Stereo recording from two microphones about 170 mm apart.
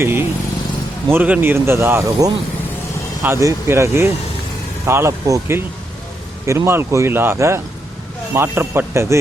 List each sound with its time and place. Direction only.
0.0 s vehicle: 15° right (ahead or behind)
1.1 s speech: 10° right (ahead or behind)